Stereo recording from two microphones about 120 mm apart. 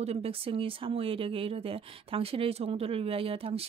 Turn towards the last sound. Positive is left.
turn(degrees=-55)  # may be behind; listen again after turning